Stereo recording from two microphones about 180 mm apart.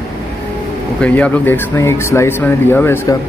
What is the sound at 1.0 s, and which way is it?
Speech, 5° left (ahead or behind).